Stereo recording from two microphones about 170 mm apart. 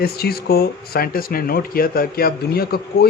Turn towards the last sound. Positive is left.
turn(degrees=65)  # may be behind; listen again after turning